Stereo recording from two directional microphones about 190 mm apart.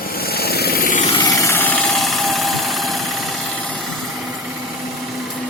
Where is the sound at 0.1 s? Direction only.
55° left (ahead or behind).